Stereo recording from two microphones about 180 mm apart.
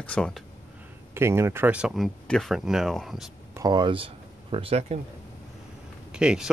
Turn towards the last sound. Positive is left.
turn(degrees=-5)  # may be behind; listen again after turning